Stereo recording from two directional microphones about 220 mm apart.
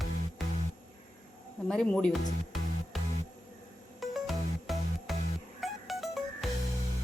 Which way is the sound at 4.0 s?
Centre (ahead or behind).